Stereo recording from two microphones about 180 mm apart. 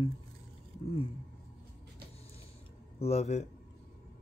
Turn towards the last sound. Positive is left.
turn(degrees=35)  # may be behind; listen again after turning